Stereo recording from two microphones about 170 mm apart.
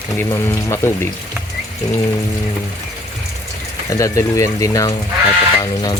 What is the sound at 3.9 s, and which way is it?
Speech, 20° left (ahead or behind).